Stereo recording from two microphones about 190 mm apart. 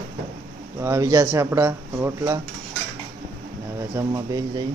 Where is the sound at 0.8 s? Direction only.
15° right (ahead or behind).